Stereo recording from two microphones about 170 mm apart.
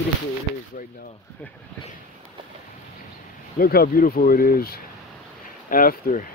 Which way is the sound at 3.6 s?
60° left (ahead or behind).